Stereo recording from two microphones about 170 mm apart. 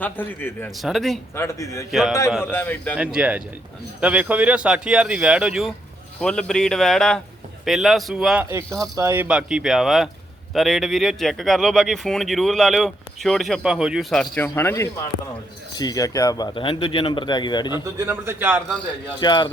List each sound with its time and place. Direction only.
0.0 s a man's voice: 10° left (ahead or behind)
0.8 s speech: centre (ahead or behind)
1.4 s speech: 20° left (ahead or behind)
1.9 s speech: centre (ahead or behind)
2.4 s a man's voice: 10° left (ahead or behind)
3.0 s speech: 5° right (ahead or behind)
8.4 s speech: 15° right (ahead or behind); by 17.8 s 25° left (ahead or behind)
17.8 s speech: 15° right (ahead or behind)
19.2 s speech: 25° left (ahead or behind)